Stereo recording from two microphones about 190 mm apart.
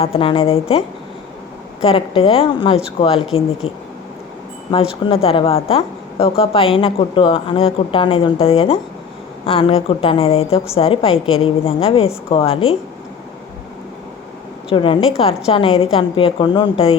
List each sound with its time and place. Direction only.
0.0 s a woman's voice: 30° left (ahead or behind)
5.0 s a woman's voice: 30° left (ahead or behind)
14.7 s a woman's voice: 25° left (ahead or behind)